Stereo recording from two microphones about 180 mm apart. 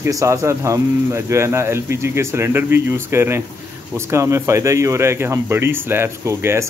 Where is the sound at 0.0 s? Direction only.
15° right (ahead or behind).